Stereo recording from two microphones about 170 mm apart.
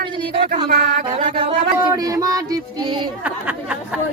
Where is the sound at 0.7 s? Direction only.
45° right (ahead or behind).